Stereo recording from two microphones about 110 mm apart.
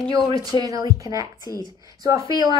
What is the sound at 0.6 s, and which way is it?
Speech, 35° right (ahead or behind).